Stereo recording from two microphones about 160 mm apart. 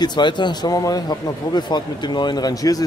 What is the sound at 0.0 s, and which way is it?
Speech, 30° left (ahead or behind).